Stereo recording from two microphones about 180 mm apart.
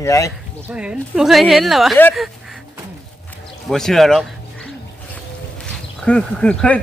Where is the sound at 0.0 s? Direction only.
15° left (ahead or behind).